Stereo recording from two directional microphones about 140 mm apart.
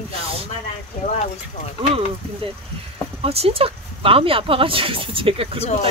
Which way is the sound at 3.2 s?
45° right (ahead or behind).